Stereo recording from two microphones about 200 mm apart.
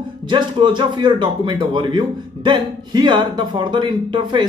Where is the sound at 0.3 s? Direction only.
25° right (ahead or behind).